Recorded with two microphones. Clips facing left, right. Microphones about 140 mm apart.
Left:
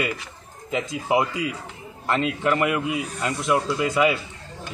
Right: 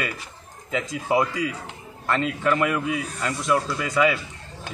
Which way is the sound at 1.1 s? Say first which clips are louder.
Even; 5° left (ahead or behind).